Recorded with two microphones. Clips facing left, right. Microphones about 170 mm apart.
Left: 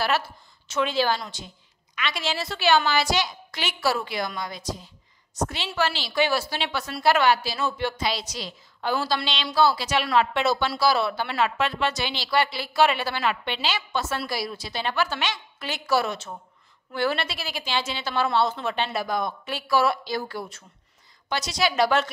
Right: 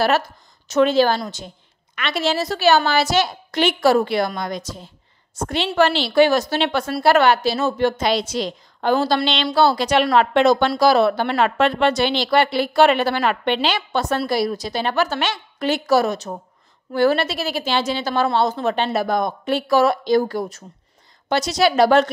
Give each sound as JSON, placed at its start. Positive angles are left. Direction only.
{"t": 0.0, "sound": "a woman's voice", "side_deg": -45}
{"t": 9.3, "sound": "a woman's voice", "side_deg": -65}